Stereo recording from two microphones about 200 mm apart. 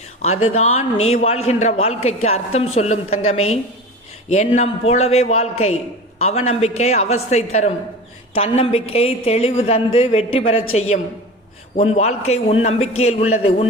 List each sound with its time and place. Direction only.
0.4 s a man's voice: 30° left (ahead or behind)